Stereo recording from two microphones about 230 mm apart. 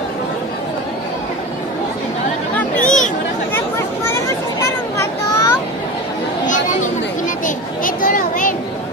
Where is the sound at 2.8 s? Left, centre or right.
Left.